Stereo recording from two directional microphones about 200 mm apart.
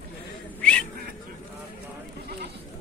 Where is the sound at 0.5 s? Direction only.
5° left (ahead or behind).